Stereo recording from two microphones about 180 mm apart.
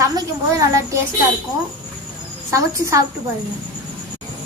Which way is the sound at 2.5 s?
15° right (ahead or behind).